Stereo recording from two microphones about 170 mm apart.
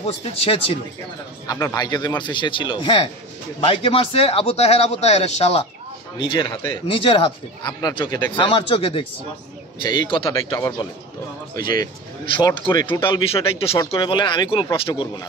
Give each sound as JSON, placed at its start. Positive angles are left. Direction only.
{"t": 0.0, "sound": "a man's voice", "side_deg": 35}
{"t": 1.5, "sound": "a man's voice", "side_deg": 20}
{"t": 12.4, "sound": "a man's voice", "side_deg": 25}